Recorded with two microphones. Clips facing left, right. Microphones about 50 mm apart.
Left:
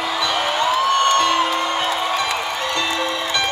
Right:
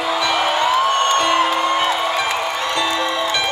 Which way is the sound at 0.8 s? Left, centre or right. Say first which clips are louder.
Even; right.